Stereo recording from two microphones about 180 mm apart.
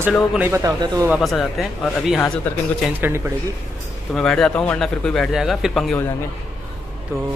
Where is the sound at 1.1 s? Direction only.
Centre (ahead or behind).